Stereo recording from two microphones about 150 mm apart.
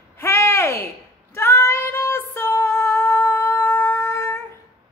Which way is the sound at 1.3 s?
15° left (ahead or behind).